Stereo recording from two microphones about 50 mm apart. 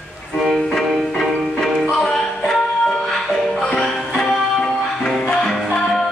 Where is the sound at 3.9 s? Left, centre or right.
Centre.